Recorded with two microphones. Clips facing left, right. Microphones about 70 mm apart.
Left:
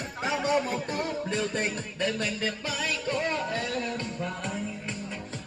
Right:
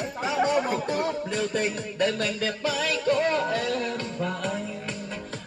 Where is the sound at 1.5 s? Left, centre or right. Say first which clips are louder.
Right 3 dB; left.